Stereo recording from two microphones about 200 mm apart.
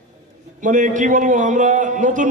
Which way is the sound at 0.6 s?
40° right (ahead or behind).